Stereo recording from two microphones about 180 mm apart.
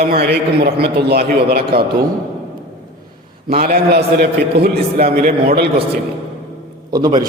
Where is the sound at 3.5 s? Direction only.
60° right (ahead or behind).